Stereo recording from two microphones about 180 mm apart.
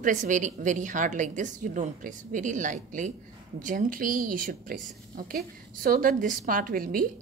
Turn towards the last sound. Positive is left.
turn(degrees=-50)  # may be behind; listen again after turning